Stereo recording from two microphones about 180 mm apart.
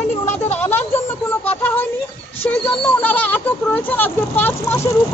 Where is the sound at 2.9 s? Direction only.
10° left (ahead or behind).